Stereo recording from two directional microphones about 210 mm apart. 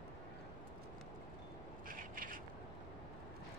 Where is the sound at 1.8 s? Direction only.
40° right (ahead or behind).